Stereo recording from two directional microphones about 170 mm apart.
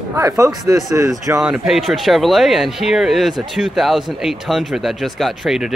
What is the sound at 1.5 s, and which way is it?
Speech, centre (ahead or behind).